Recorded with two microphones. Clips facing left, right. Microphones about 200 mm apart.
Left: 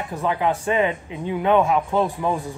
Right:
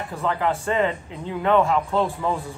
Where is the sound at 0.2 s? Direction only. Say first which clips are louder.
Left 2 dB; 15° left (ahead or behind).